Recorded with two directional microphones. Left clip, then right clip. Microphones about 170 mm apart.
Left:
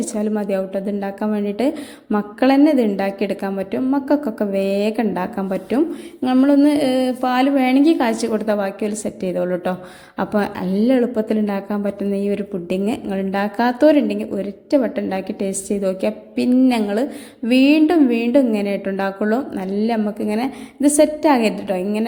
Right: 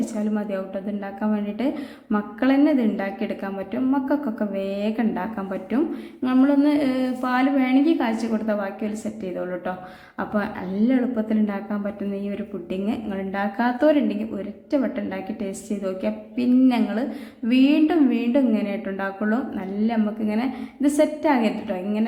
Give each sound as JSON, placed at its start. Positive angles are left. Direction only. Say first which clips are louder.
{"t": 0.0, "sound": "a woman's voice", "louder": "left 5 dB", "side_deg": 35}